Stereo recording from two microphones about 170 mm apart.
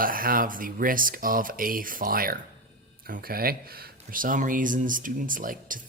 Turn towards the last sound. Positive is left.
turn(degrees=-55)  # may be behind; listen again after turning